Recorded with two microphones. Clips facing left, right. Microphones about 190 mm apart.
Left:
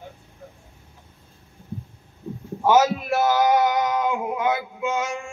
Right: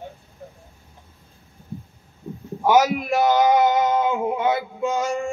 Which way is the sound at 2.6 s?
15° right (ahead or behind).